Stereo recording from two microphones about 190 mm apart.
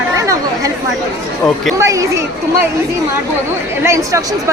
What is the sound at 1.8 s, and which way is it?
Speech, 15° right (ahead or behind).